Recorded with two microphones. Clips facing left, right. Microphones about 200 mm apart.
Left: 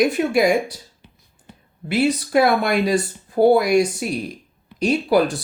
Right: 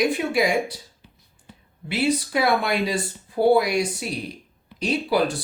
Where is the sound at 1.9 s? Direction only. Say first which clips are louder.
Left 4 dB; 45° left (ahead or behind).